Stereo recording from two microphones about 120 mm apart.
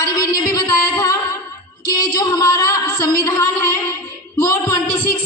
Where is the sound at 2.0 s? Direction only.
35° left (ahead or behind).